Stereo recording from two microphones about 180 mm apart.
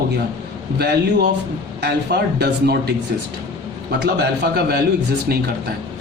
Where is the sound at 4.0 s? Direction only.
65° right (ahead or behind).